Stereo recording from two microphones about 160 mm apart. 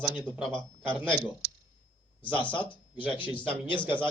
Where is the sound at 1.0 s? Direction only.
15° right (ahead or behind).